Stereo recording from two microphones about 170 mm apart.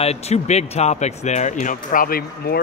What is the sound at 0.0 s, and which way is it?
Speech, 40° left (ahead or behind).